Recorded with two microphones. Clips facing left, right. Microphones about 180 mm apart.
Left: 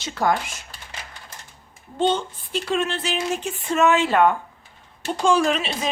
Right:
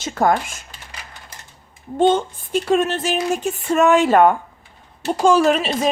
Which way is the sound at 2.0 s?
50° right (ahead or behind).